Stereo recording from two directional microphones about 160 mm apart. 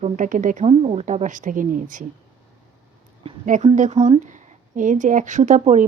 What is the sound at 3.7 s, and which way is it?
A woman's voice, 45° right (ahead or behind).